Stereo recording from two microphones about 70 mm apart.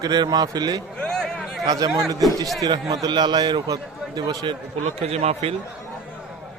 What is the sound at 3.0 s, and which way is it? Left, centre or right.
A man's voice, right.